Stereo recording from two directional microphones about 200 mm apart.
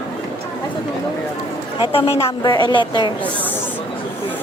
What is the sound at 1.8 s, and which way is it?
A woman's voice, 30° left (ahead or behind).